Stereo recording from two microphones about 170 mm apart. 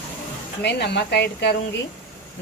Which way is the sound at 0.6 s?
85° left.